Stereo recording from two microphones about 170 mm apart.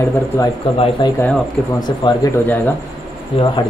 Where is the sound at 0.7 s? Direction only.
35° left (ahead or behind).